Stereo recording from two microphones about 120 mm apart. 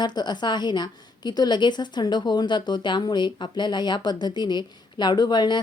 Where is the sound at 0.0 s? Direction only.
35° left (ahead or behind).